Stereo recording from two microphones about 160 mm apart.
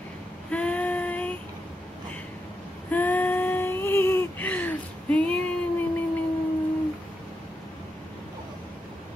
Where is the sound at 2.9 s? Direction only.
10° left (ahead or behind).